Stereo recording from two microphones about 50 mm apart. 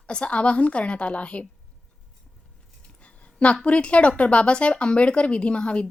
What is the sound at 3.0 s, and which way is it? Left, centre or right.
A woman's voice, left.